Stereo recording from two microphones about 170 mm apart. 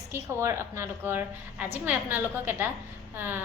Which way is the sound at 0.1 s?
15° right (ahead or behind).